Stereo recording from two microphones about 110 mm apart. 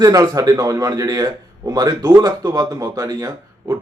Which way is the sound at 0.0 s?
35° right (ahead or behind).